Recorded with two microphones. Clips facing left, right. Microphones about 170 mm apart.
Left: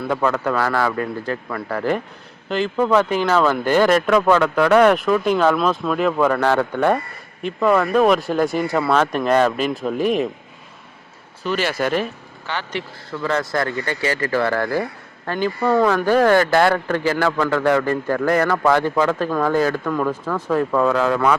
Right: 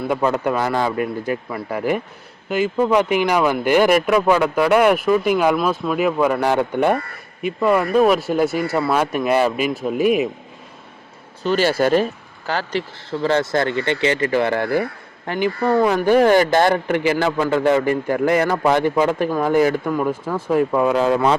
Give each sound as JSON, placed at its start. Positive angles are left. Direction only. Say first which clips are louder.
{"t": 0.1, "sound": "speech", "louder": "even", "side_deg": -20}
{"t": 11.4, "sound": "speech", "louder": "right 4 dB", "side_deg": -30}